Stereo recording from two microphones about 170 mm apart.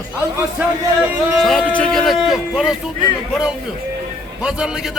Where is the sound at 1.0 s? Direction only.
10° right (ahead or behind).